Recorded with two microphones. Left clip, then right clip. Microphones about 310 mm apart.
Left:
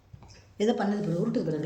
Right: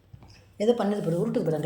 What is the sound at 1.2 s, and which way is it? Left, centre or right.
Speech, centre.